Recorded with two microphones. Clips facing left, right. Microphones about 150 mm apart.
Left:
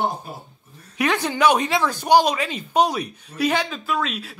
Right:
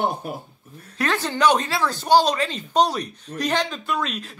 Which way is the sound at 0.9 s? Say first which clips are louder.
Left 2 dB; 15° left (ahead or behind).